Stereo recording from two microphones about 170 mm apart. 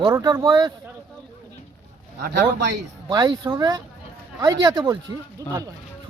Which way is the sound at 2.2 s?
90° right.